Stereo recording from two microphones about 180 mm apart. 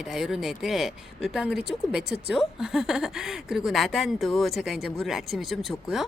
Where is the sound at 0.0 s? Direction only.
Centre (ahead or behind).